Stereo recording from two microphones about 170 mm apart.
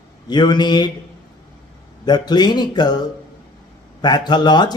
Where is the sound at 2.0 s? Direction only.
25° left (ahead or behind).